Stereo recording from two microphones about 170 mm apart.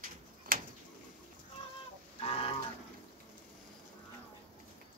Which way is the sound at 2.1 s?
35° left (ahead or behind).